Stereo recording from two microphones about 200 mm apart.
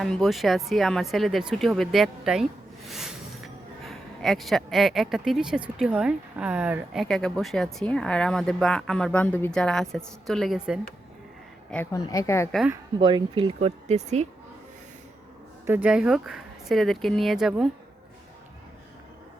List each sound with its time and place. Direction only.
0.0 s speech: centre (ahead or behind)
11.7 s a woman's voice: 10° left (ahead or behind)
13.0 s speech: 25° right (ahead or behind)
15.6 s speech: 10° right (ahead or behind)